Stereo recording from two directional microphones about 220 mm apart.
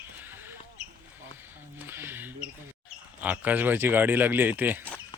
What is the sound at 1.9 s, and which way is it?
Mouse, 10° right (ahead or behind).